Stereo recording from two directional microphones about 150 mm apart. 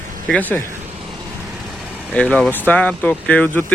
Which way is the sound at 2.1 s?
5° left (ahead or behind).